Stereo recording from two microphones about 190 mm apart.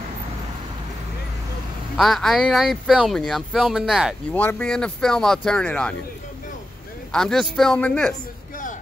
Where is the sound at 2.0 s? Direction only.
Centre (ahead or behind).